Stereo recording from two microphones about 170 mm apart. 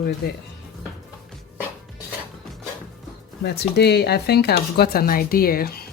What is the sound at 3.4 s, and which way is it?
Speech, 75° left (ahead or behind).